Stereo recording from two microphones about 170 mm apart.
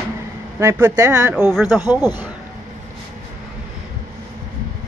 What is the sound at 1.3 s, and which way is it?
Speech, 5° right (ahead or behind).